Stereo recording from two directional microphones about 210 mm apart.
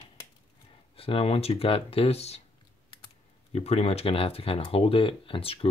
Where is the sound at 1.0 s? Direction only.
25° left (ahead or behind).